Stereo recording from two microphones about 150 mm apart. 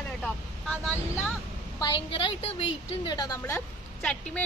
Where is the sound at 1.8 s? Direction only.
35° left (ahead or behind).